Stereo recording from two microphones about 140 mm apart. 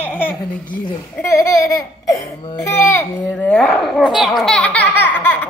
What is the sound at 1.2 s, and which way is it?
Speech, 20° left (ahead or behind).